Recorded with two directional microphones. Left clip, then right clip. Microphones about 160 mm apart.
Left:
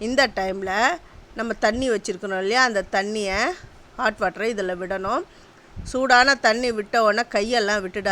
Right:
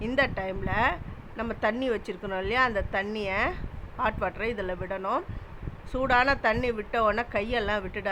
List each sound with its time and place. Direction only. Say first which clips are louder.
0.2 s speech: left 7 dB; 45° left (ahead or behind)